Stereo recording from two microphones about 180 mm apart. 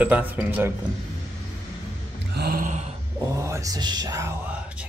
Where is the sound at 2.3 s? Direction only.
55° right (ahead or behind).